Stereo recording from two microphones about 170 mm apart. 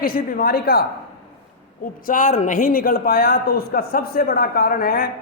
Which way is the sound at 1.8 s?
55° left (ahead or behind).